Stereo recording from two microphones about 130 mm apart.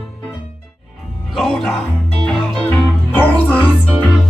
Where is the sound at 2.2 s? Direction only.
10° left (ahead or behind).